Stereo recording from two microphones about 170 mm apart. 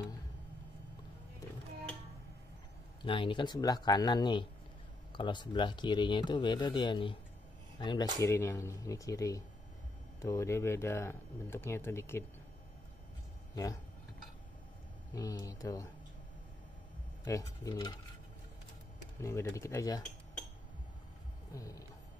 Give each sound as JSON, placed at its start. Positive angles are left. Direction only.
{"t": 3.0, "sound": "speech", "side_deg": 30}
{"t": 15.1, "sound": "speech", "side_deg": 20}
{"t": 17.2, "sound": "speech", "side_deg": 20}
{"t": 19.2, "sound": "speech", "side_deg": 15}
{"t": 21.5, "sound": "speech", "side_deg": 20}